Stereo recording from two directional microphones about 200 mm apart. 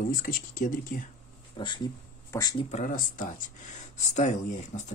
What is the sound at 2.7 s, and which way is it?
Speech, 40° left (ahead or behind).